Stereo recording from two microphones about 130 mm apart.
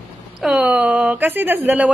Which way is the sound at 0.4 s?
5° right (ahead or behind).